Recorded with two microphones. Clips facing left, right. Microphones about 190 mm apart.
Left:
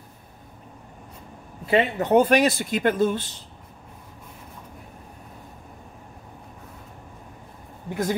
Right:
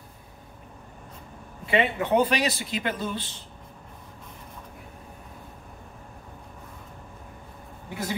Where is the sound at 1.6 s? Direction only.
40° left (ahead or behind).